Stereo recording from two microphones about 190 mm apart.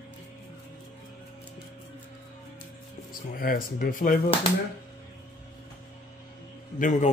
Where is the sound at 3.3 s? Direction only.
50° left (ahead or behind).